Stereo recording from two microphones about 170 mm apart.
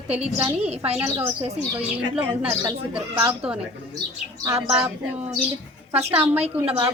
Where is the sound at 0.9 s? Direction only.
20° right (ahead or behind).